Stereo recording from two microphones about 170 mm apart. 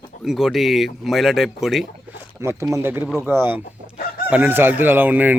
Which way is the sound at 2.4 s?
15° right (ahead or behind).